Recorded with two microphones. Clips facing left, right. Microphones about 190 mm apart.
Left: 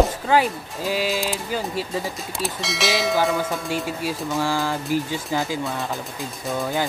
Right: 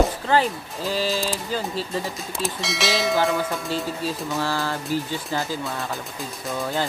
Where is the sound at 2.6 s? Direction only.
Centre (ahead or behind).